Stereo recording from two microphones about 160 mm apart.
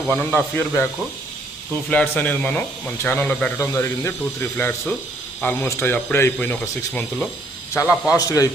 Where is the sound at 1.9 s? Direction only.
10° left (ahead or behind).